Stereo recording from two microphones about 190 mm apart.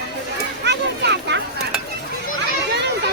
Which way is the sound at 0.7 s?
65° right (ahead or behind).